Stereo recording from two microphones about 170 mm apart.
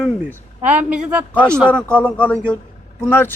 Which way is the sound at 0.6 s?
10° right (ahead or behind).